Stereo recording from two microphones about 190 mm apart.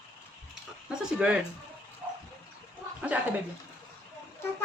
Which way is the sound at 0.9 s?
5° right (ahead or behind).